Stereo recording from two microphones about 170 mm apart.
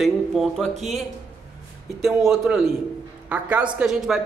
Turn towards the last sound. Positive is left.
turn(degrees=-5)  # may be behind; listen again after turning